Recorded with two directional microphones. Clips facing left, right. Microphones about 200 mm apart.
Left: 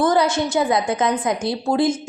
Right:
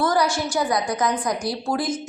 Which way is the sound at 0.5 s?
25° left (ahead or behind).